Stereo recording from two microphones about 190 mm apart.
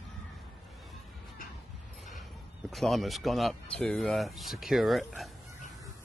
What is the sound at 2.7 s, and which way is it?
Speech, centre (ahead or behind).